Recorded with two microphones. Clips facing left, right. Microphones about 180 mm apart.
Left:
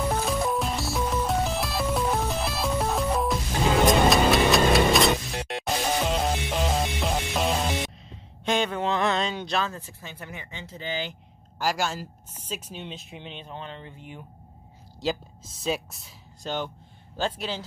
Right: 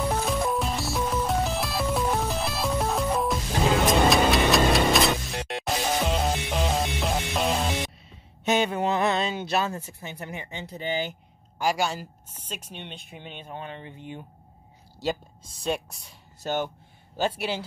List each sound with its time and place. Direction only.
0.0 s music: centre (ahead or behind)
8.5 s a sound: 10° right (ahead or behind)
10.2 s speech: 20° right (ahead or behind)
11.5 s speech: centre (ahead or behind)
13.7 s speech: 20° right (ahead or behind)
15.0 s speech: centre (ahead or behind)
17.2 s a man's voice: 10° right (ahead or behind)